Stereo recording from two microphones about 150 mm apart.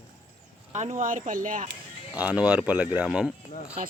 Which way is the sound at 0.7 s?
50° right (ahead or behind).